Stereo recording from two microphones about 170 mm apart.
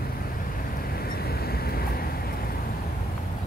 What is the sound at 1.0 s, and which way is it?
Vehicle, 65° left (ahead or behind).